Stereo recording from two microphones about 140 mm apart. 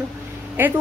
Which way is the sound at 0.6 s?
15° right (ahead or behind).